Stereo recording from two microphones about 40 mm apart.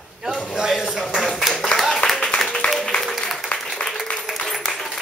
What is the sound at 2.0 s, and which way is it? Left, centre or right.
Applause, centre.